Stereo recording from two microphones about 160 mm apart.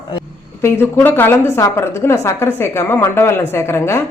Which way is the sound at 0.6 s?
15° left (ahead or behind).